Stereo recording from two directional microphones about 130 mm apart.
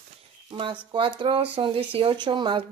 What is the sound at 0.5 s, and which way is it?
Speech, 40° right (ahead or behind).